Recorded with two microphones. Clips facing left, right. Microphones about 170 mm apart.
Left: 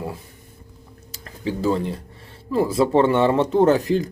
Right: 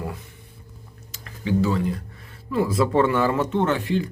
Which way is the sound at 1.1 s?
35° left (ahead or behind).